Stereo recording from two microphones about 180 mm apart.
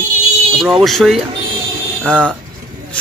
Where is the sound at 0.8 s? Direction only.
Centre (ahead or behind).